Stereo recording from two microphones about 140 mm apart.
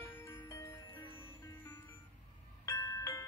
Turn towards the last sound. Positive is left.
turn(degrees=20)  # may be behind; listen again after turning